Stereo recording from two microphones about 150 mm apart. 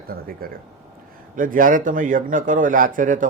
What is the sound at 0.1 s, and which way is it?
Speech, 80° right.